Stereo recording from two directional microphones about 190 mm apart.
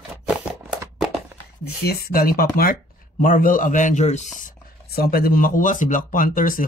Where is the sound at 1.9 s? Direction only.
50° left (ahead or behind).